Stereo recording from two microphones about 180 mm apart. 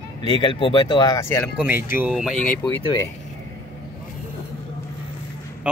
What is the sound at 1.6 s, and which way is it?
Speech, 10° right (ahead or behind).